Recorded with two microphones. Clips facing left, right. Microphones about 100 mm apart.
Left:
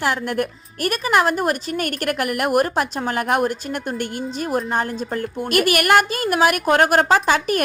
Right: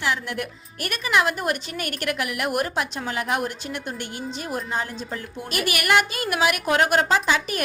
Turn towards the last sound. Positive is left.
turn(degrees=50)  # may be behind; listen again after turning